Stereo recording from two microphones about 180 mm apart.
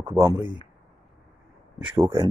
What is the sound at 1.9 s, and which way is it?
Speech, 15° right (ahead or behind).